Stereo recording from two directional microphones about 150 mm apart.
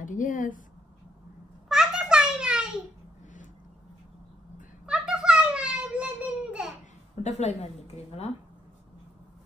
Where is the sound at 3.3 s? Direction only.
60° left (ahead or behind).